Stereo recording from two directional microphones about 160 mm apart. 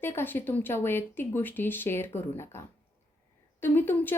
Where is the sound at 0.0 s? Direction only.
15° left (ahead or behind).